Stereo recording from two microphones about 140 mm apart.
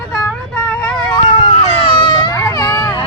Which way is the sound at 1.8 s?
35° left (ahead or behind).